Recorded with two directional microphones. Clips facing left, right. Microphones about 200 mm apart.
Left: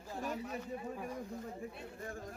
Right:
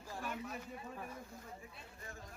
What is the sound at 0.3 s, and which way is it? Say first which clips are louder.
Speech: left 5 dB; 35° left (ahead or behind).